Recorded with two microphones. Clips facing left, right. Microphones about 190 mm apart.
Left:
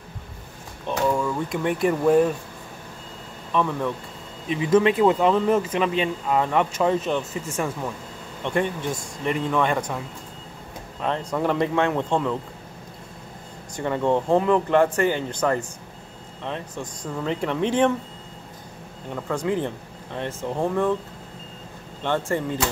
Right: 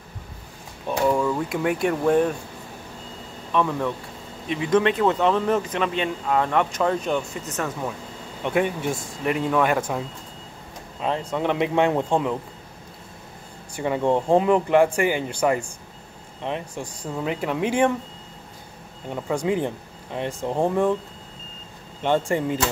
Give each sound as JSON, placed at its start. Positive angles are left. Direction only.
{"t": 0.8, "sound": "speech", "side_deg": -10}
{"t": 3.5, "sound": "speech", "side_deg": 0}
{"t": 8.5, "sound": "speech", "side_deg": -10}
{"t": 11.0, "sound": "speech", "side_deg": -10}
{"t": 11.3, "sound": "speech", "side_deg": 0}
{"t": 11.6, "sound": "speech", "side_deg": -15}
{"t": 13.7, "sound": "speech", "side_deg": -10}
{"t": 19.1, "sound": "speech", "side_deg": -15}
{"t": 22.0, "sound": "speech", "side_deg": -15}